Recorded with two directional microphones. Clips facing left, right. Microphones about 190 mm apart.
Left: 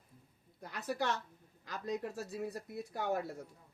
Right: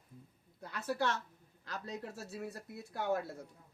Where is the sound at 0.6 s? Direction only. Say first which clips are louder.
Right 1 dB; 15° left (ahead or behind).